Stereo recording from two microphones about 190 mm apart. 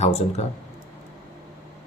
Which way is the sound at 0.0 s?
35° left (ahead or behind).